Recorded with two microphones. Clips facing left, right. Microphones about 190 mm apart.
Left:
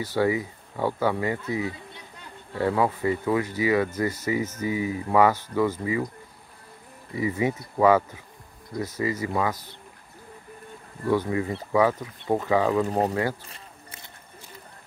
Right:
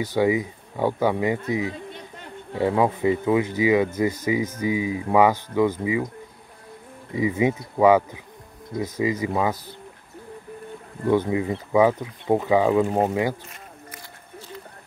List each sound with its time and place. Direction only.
0.0 s speech: 15° right (ahead or behind)
7.2 s speech: 20° right (ahead or behind)
11.1 s speech: 20° right (ahead or behind)